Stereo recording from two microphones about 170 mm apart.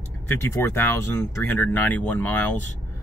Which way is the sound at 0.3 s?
15° left (ahead or behind).